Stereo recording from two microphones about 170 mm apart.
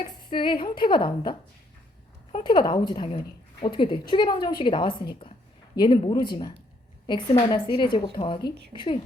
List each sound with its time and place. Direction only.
0.0 s a woman's voice: 30° left (ahead or behind)
2.4 s a woman's voice: 25° left (ahead or behind)